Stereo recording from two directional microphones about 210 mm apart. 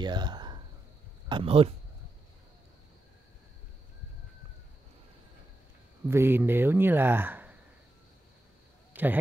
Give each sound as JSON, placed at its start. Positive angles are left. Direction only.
{"t": 0.0, "sound": "speech", "side_deg": -20}
{"t": 6.0, "sound": "speech", "side_deg": -10}
{"t": 8.9, "sound": "speech", "side_deg": -10}